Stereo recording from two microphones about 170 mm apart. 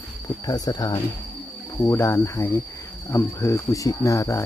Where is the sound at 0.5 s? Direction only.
20° left (ahead or behind).